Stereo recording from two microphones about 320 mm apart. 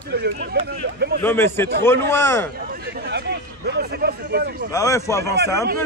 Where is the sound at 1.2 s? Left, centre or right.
Centre.